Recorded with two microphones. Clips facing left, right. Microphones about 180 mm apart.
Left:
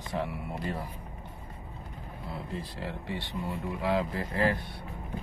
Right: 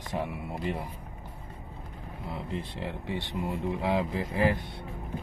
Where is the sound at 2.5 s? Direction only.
15° right (ahead or behind).